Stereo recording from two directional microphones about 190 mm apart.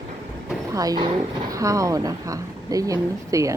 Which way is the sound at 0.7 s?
20° right (ahead or behind).